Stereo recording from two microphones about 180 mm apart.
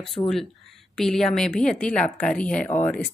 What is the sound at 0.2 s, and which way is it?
Speech, 25° left (ahead or behind).